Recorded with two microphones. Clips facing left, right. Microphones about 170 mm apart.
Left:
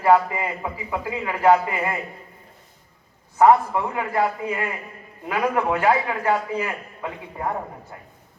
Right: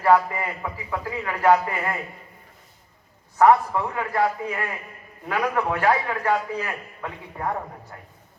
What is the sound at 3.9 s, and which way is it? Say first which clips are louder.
Speech: even; 15° left (ahead or behind).